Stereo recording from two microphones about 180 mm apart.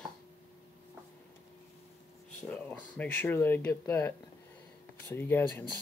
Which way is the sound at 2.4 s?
10° left (ahead or behind).